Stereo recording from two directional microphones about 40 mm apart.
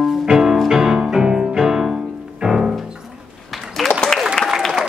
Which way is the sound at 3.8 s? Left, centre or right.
Centre.